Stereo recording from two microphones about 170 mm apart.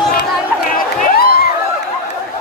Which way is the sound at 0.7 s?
55° left (ahead or behind).